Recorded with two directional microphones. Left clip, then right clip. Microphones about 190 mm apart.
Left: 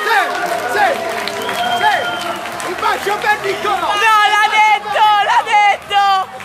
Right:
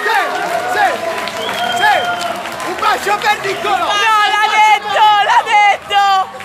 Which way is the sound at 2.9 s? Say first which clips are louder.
Right 2 dB; 50° right (ahead or behind).